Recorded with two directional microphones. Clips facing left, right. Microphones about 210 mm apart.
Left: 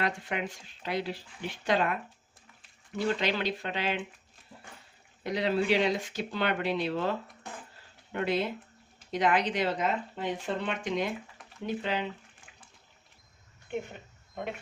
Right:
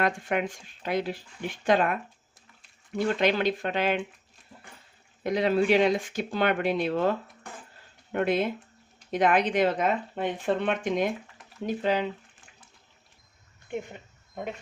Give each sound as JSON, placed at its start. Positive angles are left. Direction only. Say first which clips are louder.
{"t": 0.0, "sound": "speech", "louder": "right 5 dB", "side_deg": -50}
{"t": 3.2, "sound": "speech", "louder": "right 6 dB", "side_deg": -50}
{"t": 5.2, "sound": "speech", "louder": "right 5 dB", "side_deg": -50}